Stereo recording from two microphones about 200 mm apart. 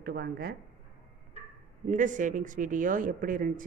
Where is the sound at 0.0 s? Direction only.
50° right (ahead or behind).